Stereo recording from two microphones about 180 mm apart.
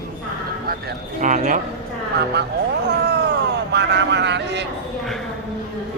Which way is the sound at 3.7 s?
75° right (ahead or behind).